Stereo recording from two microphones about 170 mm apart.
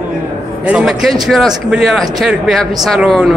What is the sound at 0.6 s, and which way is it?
A man's voice, centre (ahead or behind).